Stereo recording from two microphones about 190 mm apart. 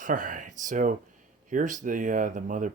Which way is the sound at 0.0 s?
45° right (ahead or behind).